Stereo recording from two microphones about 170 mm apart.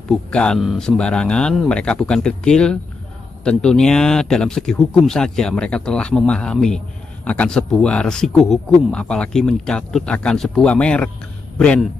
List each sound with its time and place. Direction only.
0.1 s speech: 5° left (ahead or behind)